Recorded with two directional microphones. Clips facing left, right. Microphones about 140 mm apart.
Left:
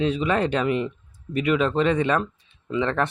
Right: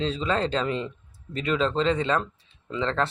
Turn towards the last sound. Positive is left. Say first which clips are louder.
# left 3 dB
turn(degrees=15)  # may be behind; listen again after turning